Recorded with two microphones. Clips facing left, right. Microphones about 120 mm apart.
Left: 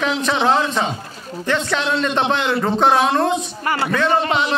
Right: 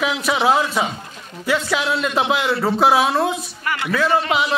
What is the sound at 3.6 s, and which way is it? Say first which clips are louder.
Speech: even; 35° left (ahead or behind).